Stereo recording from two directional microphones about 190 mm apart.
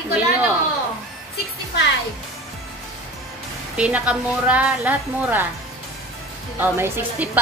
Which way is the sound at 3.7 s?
5° right (ahead or behind).